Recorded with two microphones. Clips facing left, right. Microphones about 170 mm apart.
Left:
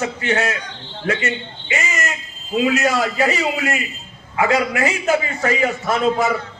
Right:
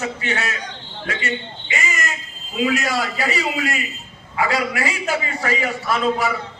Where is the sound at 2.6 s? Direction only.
40° left (ahead or behind).